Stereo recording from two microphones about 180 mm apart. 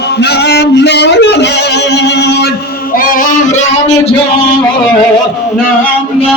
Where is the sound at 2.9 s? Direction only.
45° left (ahead or behind).